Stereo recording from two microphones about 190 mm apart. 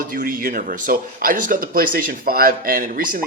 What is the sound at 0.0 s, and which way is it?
Speech, 50° right (ahead or behind).